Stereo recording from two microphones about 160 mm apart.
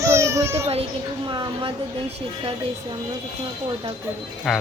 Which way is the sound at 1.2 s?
30° right (ahead or behind).